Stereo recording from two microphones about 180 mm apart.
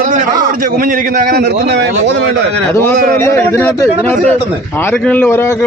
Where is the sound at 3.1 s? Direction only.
15° left (ahead or behind).